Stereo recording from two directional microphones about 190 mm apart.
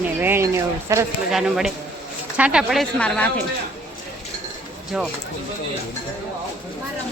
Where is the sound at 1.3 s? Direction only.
Centre (ahead or behind).